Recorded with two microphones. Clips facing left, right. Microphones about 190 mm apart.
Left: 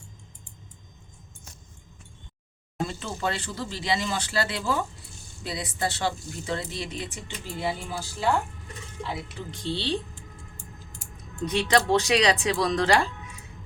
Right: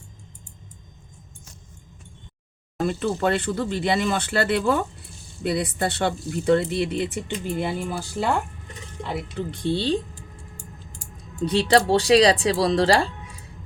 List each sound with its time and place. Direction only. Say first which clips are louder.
2.8 s speech: right 7 dB; 55° right (ahead or behind)
9.5 s speech: right 6 dB; 55° right (ahead or behind)
11.4 s speech: right 4 dB; 30° right (ahead or behind)